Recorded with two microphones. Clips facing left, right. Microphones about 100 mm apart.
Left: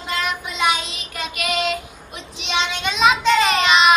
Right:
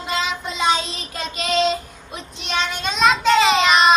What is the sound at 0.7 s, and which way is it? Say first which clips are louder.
Child singing: right 2 dB; 30° right (ahead or behind).